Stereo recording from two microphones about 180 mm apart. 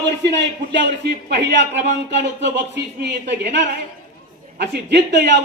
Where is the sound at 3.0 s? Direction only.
70° right (ahead or behind).